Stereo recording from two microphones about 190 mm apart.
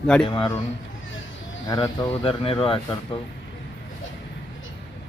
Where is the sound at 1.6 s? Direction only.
25° left (ahead or behind).